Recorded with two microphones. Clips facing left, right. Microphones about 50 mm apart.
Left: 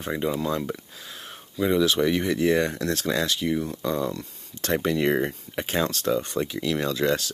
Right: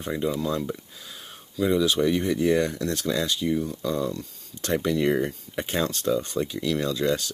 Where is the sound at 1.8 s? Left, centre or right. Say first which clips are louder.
Left 2 dB; left.